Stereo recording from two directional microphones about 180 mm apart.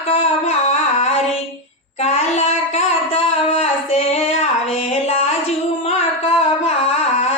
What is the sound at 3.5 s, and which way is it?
Female singing, 35° left (ahead or behind).